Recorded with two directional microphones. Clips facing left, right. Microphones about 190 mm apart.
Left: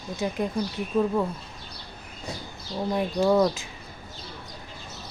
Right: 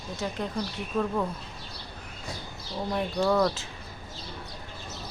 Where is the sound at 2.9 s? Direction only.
15° left (ahead or behind).